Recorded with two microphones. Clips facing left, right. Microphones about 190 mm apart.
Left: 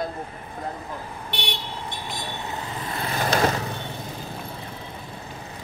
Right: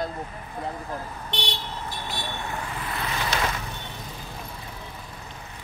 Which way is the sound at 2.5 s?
25° left (ahead or behind).